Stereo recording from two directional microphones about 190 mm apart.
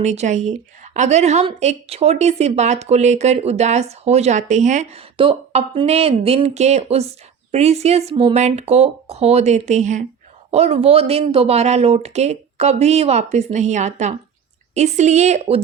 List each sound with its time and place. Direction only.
0.0 s a woman's voice: 35° right (ahead or behind)